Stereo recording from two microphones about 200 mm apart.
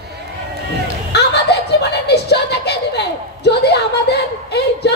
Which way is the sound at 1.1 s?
55° left (ahead or behind).